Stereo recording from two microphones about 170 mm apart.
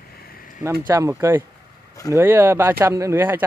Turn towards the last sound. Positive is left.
turn(degrees=-15)  # may be behind; listen again after turning